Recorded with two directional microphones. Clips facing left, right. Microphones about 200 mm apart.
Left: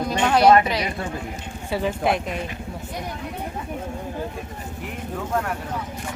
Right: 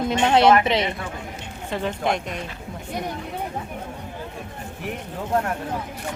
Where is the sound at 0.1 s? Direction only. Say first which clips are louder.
Left 1 dB; 25° right (ahead or behind).